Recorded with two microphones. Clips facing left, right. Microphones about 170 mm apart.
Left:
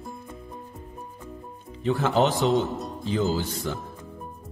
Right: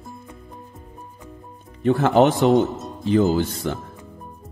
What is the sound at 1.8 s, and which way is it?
Speech, 50° right (ahead or behind).